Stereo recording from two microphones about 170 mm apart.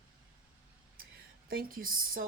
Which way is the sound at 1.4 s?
60° right (ahead or behind).